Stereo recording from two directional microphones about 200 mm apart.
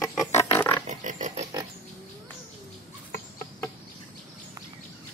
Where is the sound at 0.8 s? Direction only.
35° right (ahead or behind).